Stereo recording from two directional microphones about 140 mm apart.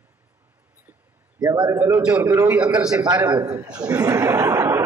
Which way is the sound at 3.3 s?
15° right (ahead or behind).